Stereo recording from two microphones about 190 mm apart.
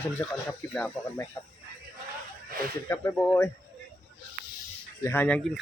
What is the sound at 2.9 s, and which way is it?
Speech, 10° left (ahead or behind).